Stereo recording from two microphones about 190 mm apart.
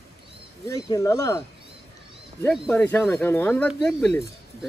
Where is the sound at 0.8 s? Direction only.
20° left (ahead or behind).